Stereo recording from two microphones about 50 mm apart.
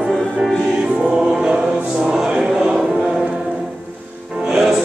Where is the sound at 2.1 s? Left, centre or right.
Centre.